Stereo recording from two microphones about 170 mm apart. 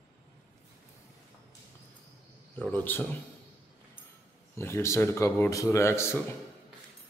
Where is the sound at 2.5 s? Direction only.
10° left (ahead or behind).